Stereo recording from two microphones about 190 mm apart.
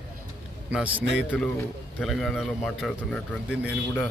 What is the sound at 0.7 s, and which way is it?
A man's voice, 5° right (ahead or behind).